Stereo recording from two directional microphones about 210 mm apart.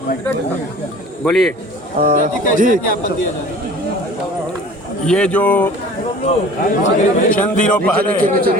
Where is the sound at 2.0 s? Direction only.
45° right (ahead or behind).